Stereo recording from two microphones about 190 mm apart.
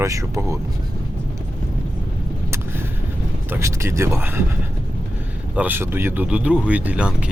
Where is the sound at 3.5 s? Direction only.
15° right (ahead or behind).